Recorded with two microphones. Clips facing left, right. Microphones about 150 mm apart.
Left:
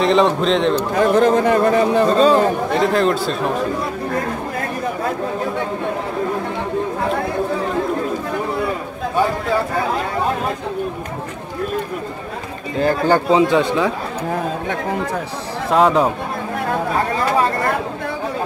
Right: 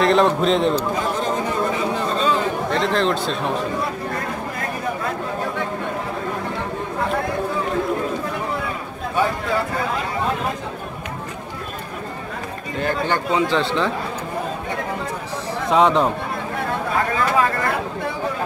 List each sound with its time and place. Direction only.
0.0 s speech: centre (ahead or behind)
0.7 s speech: 60° left (ahead or behind)
2.7 s speech: 5° left (ahead or behind)
12.8 s speech: 35° left (ahead or behind)
13.5 s speech: 15° left (ahead or behind)
15.7 s speech: 5° left (ahead or behind)